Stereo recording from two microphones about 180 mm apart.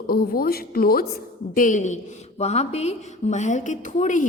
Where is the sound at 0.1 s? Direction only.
55° left (ahead or behind).